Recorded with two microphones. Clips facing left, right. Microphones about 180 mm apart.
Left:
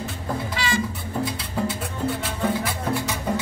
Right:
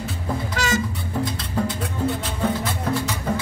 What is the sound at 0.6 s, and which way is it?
Music, 45° right (ahead or behind).